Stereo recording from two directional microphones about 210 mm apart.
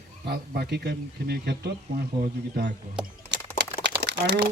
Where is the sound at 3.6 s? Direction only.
55° right (ahead or behind).